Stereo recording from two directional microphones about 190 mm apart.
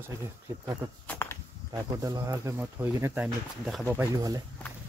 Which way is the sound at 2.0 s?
15° right (ahead or behind).